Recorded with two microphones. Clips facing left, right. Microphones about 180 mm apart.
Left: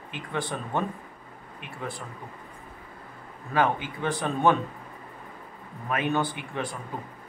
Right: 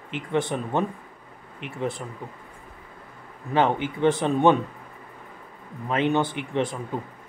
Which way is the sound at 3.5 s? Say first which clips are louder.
Right 3 dB; 20° right (ahead or behind).